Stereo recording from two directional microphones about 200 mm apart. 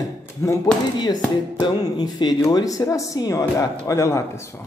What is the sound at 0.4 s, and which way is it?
Speech, 15° left (ahead or behind).